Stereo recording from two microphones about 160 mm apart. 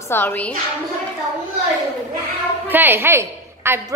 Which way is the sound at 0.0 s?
15° left (ahead or behind).